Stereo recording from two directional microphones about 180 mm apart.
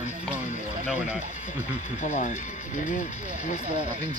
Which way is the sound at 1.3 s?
45° left (ahead or behind).